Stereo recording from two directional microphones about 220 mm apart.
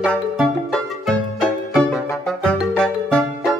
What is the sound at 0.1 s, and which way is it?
Music, centre (ahead or behind).